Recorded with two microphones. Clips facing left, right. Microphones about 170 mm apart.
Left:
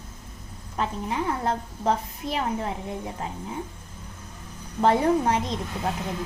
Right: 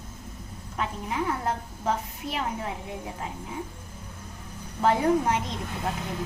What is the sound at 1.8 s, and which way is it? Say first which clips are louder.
Speech: left 4 dB; 35° left (ahead or behind).